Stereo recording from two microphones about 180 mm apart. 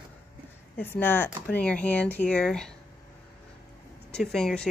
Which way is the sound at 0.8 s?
10° left (ahead or behind).